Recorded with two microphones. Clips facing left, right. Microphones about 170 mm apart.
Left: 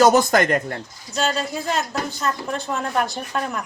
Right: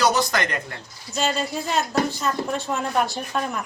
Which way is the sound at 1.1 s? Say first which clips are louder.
Left 1 dB; centre (ahead or behind).